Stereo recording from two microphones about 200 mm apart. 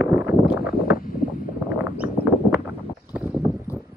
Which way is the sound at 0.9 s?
45° left (ahead or behind).